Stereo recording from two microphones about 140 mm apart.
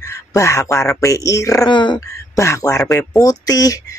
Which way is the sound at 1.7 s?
35° left (ahead or behind).